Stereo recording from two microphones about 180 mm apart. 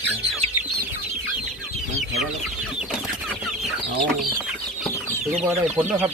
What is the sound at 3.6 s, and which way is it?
Chicken, centre (ahead or behind).